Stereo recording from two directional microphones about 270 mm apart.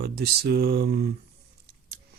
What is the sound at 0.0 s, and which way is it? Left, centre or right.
Speech, right.